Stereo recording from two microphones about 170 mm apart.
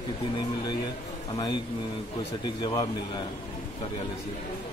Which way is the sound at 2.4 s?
25° left (ahead or behind).